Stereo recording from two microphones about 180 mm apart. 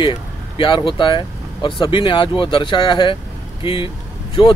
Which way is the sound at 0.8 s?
25° left (ahead or behind).